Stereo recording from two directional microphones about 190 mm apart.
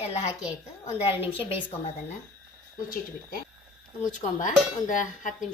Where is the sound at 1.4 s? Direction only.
30° left (ahead or behind).